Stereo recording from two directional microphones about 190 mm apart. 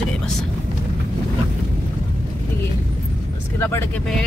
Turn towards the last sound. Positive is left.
turn(degrees=10)  # may be behind; listen again after turning